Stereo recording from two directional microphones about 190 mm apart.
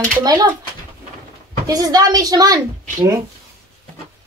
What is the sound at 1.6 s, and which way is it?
Speech, 20° right (ahead or behind).